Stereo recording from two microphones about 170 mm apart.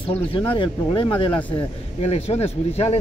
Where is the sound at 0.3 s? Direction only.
30° left (ahead or behind).